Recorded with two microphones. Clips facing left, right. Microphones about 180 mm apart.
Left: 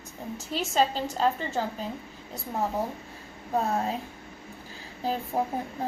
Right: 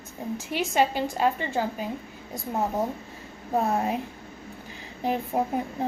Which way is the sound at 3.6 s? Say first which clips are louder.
Right 3 dB; 15° right (ahead or behind).